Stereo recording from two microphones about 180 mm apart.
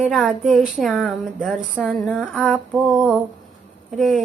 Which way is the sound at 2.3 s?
Centre (ahead or behind).